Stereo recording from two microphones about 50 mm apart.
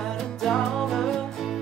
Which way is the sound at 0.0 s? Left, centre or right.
Centre.